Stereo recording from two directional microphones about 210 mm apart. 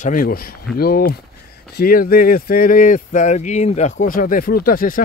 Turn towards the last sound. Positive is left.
turn(degrees=45)  # may be behind; listen again after turning